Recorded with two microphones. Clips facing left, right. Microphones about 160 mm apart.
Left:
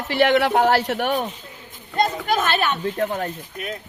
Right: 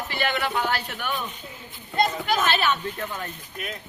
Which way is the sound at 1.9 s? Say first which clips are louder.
Left 2 dB; 40° left (ahead or behind).